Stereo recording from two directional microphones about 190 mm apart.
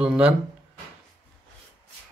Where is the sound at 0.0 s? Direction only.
5° right (ahead or behind).